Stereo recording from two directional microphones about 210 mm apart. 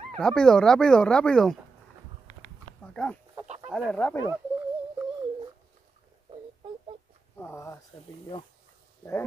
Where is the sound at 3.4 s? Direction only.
35° right (ahead or behind).